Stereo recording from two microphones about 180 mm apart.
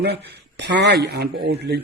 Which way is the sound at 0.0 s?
65° right (ahead or behind).